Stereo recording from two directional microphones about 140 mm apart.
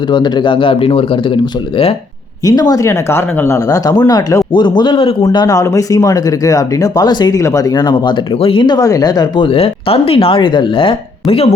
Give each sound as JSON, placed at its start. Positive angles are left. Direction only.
{"t": 0.1, "sound": "speech", "side_deg": 30}
{"t": 2.4, "sound": "speech", "side_deg": 30}